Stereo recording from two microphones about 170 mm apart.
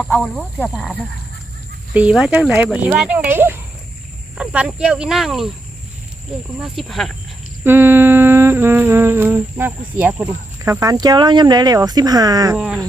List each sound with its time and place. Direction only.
0.0 s speech: 5° left (ahead or behind)
1.9 s humming: 5° right (ahead or behind)
4.4 s speech: 5° right (ahead or behind)
6.6 s speech: centre (ahead or behind)
7.6 s humming: 15° right (ahead or behind)
10.6 s speech: 20° right (ahead or behind)
12.5 s speech: 5° right (ahead or behind)